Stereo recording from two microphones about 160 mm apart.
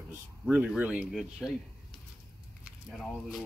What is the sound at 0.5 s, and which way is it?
Speech, 5° right (ahead or behind).